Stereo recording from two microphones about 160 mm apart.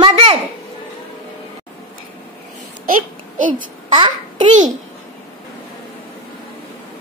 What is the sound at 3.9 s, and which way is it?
Speech, 30° right (ahead or behind).